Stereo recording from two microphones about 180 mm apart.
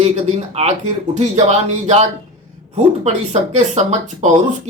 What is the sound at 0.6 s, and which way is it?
Speech, 35° right (ahead or behind).